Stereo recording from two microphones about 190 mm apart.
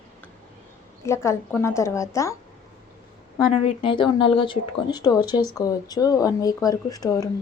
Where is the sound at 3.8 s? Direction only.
25° left (ahead or behind).